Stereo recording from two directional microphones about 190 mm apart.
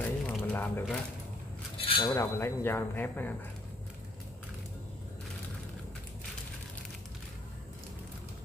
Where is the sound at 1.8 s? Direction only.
30° left (ahead or behind).